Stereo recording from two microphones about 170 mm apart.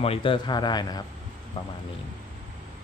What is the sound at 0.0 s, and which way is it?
A man's voice, 30° left (ahead or behind).